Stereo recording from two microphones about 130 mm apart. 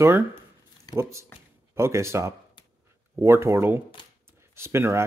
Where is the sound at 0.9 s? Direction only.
30° left (ahead or behind).